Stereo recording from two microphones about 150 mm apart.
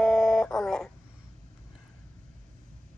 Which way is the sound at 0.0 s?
5° left (ahead or behind).